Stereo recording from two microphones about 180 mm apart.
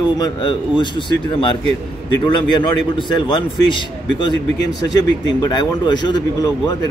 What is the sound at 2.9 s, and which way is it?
Speech, 25° left (ahead or behind).